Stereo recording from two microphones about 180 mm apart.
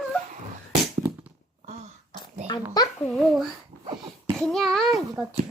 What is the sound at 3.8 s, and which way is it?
Cough, 25° right (ahead or behind).